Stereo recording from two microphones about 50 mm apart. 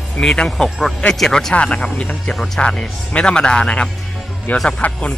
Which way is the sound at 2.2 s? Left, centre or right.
Centre.